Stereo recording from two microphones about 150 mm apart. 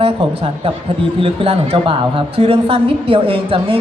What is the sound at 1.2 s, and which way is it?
A man's voice, 40° right (ahead or behind).